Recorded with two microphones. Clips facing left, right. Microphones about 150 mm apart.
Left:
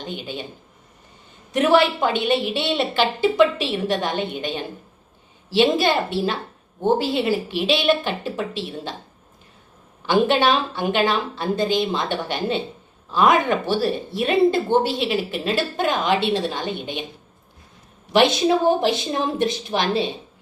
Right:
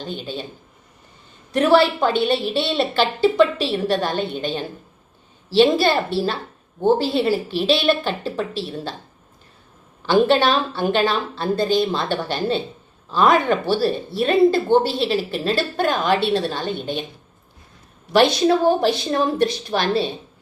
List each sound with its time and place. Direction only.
0.0 s a woman's voice: 15° left (ahead or behind)
1.5 s a woman's voice: 15° left (ahead or behind)
10.1 s a woman's voice: 15° left (ahead or behind)
18.1 s a woman's voice: 20° left (ahead or behind)